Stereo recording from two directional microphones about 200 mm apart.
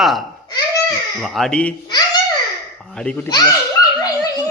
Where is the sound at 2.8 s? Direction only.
5° left (ahead or behind).